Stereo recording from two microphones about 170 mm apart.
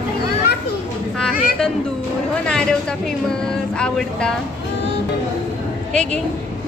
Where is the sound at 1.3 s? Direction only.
60° left (ahead or behind).